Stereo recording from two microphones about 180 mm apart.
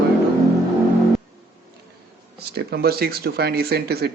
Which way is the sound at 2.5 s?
60° right (ahead or behind).